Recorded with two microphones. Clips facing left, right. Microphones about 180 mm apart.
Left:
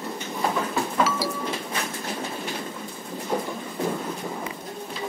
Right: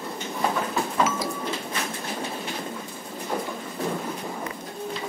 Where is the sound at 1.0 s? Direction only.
35° left (ahead or behind).